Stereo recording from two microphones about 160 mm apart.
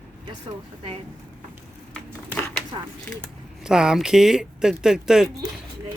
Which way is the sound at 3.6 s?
5° right (ahead or behind).